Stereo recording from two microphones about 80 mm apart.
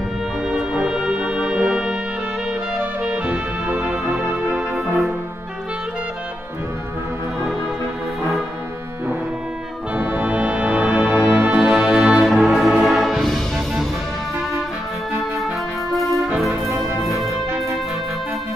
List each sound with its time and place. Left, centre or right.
0.5 s music: centre
4.6 s music: centre
9.9 s music: right
11.1 s music: right
11.5 s music: centre
15.9 s music: centre